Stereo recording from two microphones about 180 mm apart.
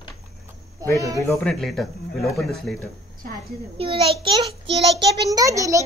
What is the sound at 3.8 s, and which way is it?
A child's voice, 30° right (ahead or behind).